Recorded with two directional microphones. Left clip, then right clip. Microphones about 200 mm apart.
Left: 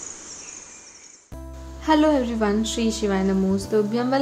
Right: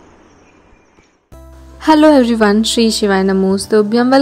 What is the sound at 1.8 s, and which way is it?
A woman's voice, 50° right (ahead or behind).